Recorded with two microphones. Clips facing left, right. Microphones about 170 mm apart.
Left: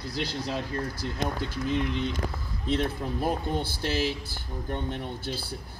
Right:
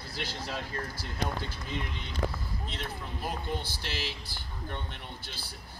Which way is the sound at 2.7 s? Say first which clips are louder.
Left 15 dB; 50° left (ahead or behind).